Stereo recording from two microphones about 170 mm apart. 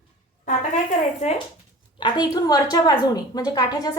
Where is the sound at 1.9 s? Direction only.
25° left (ahead or behind).